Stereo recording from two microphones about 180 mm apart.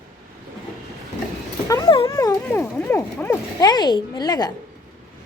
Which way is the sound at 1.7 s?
25° left (ahead or behind).